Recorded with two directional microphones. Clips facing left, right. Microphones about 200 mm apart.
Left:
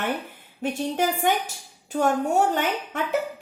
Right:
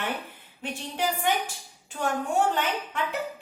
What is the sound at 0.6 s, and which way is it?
Speech, 45° left (ahead or behind).